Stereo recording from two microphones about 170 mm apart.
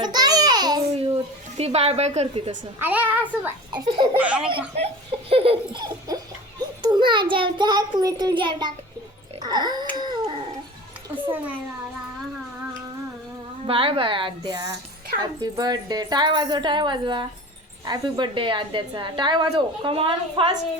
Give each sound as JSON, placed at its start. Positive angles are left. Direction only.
{"t": 0.0, "sound": "babbling", "side_deg": -25}
{"t": 2.7, "sound": "a child's voice", "side_deg": -10}
{"t": 3.7, "sound": "a woman's voice", "side_deg": -25}
{"t": 4.2, "sound": "a child's voice", "side_deg": -5}
{"t": 4.4, "sound": "a woman's voice", "side_deg": -35}
{"t": 9.4, "sound": "dog", "side_deg": -25}
{"t": 11.1, "sound": "a child's voice", "side_deg": -10}
{"t": 13.7, "sound": "a woman's voice", "side_deg": -35}